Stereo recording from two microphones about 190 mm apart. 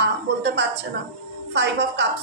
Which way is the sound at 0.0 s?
65° right (ahead or behind).